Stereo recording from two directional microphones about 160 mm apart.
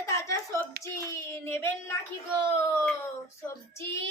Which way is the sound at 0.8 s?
15° left (ahead or behind).